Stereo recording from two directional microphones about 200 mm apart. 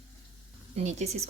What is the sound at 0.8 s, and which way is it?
Speech, 35° right (ahead or behind).